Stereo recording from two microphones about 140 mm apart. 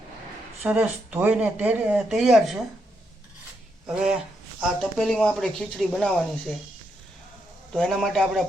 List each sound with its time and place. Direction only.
0.6 s speech: 10° right (ahead or behind)
3.8 s speech: 5° right (ahead or behind)
7.7 s speech: 5° left (ahead or behind)